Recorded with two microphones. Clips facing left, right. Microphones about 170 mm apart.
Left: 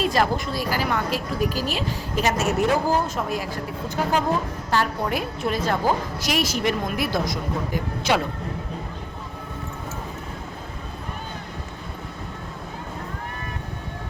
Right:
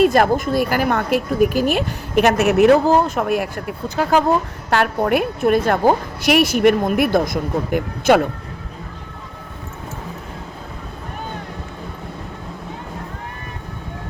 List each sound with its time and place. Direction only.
0.0 s speech: 55° right (ahead or behind); by 4.2 s 90° right
4.7 s speech: 65° right (ahead or behind)